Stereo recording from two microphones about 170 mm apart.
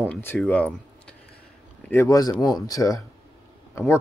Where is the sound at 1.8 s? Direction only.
15° left (ahead or behind).